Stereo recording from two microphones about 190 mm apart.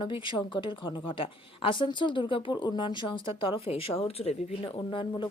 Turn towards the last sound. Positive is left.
turn(degrees=25)  # may be behind; listen again after turning